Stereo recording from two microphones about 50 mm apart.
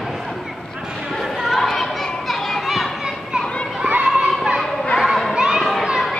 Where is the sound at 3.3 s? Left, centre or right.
Centre.